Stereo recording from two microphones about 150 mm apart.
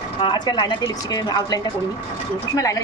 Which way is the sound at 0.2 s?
30° left (ahead or behind).